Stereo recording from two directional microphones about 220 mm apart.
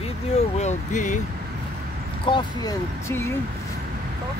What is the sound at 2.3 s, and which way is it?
Speech, 15° left (ahead or behind).